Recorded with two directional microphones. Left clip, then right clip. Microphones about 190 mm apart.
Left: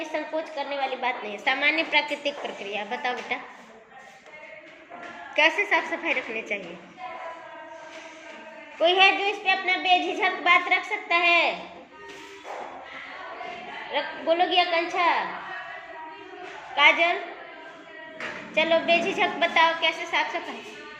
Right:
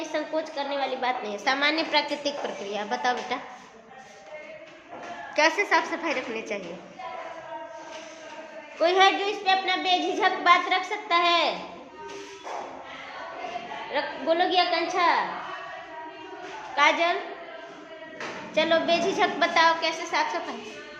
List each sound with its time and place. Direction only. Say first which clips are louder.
0.0 s a woman's voice: right 1 dB; 10° right (ahead or behind)
5.3 s a woman's voice: left 1 dB; 10° right (ahead or behind)
9.2 s a woman's voice: even; 10° right (ahead or behind)
13.9 s a woman's voice: left 1 dB; 10° right (ahead or behind)
16.7 s a woman's voice: left 2 dB; 10° right (ahead or behind)
18.5 s a woman's voice: left 1 dB; 10° right (ahead or behind)